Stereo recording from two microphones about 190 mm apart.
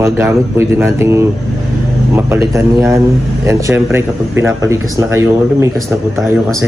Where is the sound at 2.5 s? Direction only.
15° right (ahead or behind).